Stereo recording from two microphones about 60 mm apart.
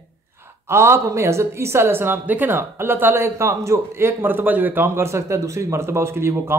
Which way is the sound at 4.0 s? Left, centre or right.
Right.